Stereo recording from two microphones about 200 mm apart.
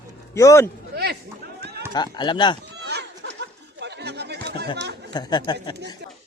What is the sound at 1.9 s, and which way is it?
Speech, 20° left (ahead or behind).